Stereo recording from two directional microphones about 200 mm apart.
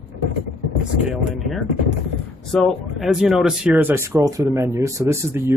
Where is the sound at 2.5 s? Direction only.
Centre (ahead or behind).